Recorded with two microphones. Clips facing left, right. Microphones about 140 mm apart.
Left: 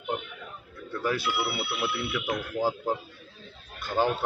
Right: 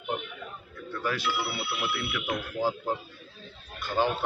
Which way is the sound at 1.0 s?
15° left (ahead or behind).